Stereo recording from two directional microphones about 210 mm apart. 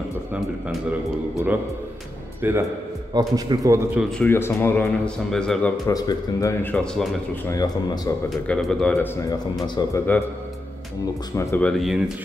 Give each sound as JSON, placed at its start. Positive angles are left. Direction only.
{"t": 1.3, "sound": "a man's voice", "side_deg": -10}
{"t": 4.0, "sound": "speech", "side_deg": 10}
{"t": 5.9, "sound": "speech", "side_deg": 15}
{"t": 7.4, "sound": "speech", "side_deg": 15}
{"t": 8.3, "sound": "speech", "side_deg": 0}
{"t": 11.3, "sound": "speech", "side_deg": 5}